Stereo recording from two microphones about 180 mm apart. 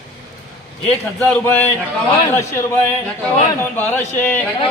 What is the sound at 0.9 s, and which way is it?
A man's voice, 10° left (ahead or behind).